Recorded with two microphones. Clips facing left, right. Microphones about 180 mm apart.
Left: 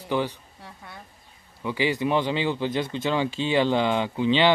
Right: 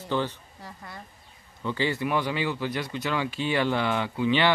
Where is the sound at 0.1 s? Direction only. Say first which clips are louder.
Left 2 dB; 15° left (ahead or behind).